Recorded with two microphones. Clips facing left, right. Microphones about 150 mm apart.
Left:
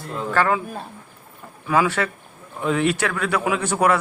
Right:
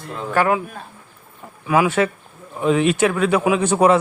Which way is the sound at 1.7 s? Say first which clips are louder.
Right 3 dB; 15° right (ahead or behind).